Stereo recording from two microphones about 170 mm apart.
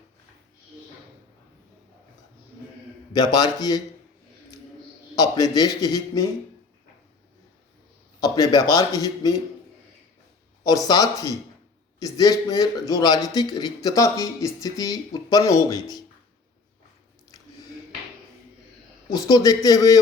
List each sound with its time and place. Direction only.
3.1 s a man's voice: 25° left (ahead or behind)
5.1 s a man's voice: 20° left (ahead or behind)
8.2 s a man's voice: 20° left (ahead or behind)
10.6 s a man's voice: 20° left (ahead or behind)
19.1 s a man's voice: 20° left (ahead or behind)